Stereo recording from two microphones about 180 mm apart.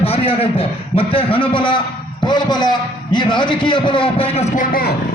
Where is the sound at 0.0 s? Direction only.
35° left (ahead or behind).